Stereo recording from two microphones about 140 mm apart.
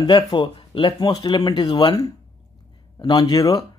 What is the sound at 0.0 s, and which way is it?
Speech, 35° left (ahead or behind).